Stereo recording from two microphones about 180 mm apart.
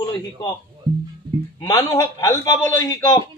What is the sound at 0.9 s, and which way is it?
Music, 25° right (ahead or behind).